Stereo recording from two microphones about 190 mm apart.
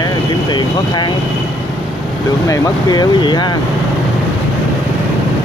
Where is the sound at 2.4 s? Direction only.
15° left (ahead or behind).